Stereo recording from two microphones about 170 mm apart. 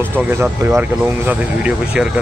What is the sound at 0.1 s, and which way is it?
Speech, 15° right (ahead or behind).